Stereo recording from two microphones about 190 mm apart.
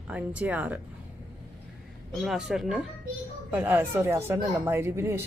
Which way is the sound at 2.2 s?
Centre (ahead or behind).